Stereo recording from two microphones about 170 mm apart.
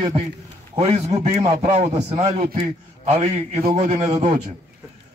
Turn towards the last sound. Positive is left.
turn(degrees=-35)  # may be behind; listen again after turning